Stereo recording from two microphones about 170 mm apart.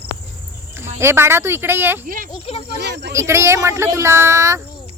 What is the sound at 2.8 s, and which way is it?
Speech, 75° right (ahead or behind).